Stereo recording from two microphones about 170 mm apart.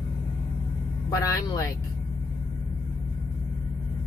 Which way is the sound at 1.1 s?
20° left (ahead or behind).